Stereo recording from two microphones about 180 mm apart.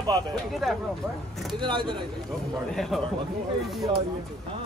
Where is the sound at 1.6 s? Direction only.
25° right (ahead or behind).